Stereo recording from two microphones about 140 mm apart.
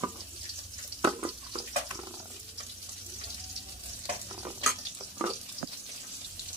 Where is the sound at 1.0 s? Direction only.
35° right (ahead or behind).